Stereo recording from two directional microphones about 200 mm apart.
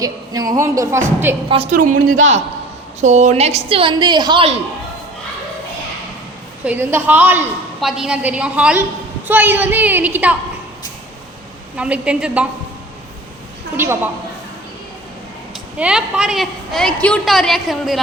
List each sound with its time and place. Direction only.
0.0 s a woman's voice: 15° right (ahead or behind)
1.7 s speech: 40° right (ahead or behind)
2.0 s a man's voice: 90° right
3.0 s a woman's voice: 35° right (ahead or behind)
6.7 s a woman's voice: 10° right (ahead or behind)
11.8 s a woman's voice: 5° right (ahead or behind)
13.7 s a woman's voice: 10° right (ahead or behind)
15.8 s a woman's voice: 5° right (ahead or behind)